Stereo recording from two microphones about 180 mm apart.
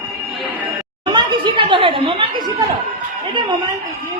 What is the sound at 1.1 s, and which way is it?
A woman's voice, 30° right (ahead or behind).